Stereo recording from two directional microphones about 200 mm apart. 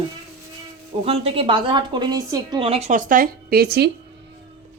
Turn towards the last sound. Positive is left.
turn(degrees=-55)  # may be behind; listen again after turning